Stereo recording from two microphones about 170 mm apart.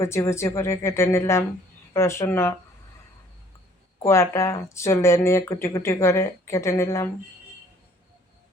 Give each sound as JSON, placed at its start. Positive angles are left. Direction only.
{"t": 0.0, "sound": "speech", "side_deg": 15}
{"t": 4.0, "sound": "speech", "side_deg": 15}